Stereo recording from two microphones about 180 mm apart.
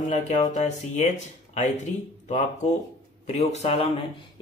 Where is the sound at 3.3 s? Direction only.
35° left (ahead or behind).